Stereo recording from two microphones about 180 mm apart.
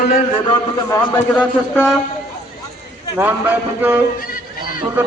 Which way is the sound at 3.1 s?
10° right (ahead or behind).